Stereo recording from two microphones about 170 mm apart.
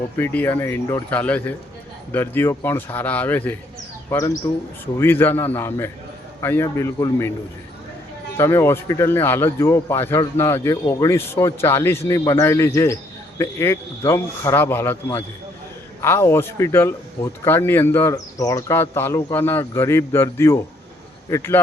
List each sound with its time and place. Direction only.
0.2 s speech: 10° left (ahead or behind)
8.4 s speech: 15° left (ahead or behind)